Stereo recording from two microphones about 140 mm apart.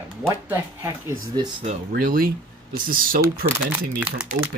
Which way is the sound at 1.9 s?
90° right.